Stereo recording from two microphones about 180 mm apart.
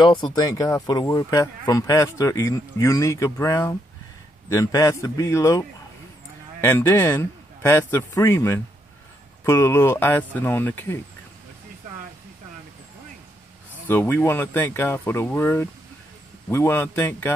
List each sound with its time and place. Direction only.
0.0 s speech: 25° left (ahead or behind); by 11.0 s 10° left (ahead or behind)
13.8 s speech: 10° left (ahead or behind)